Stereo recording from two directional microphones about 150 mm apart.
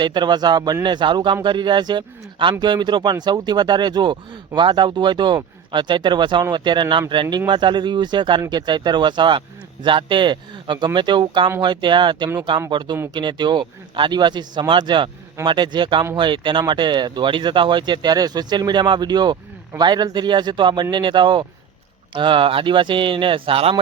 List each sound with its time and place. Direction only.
0.0 s speech: 30° right (ahead or behind)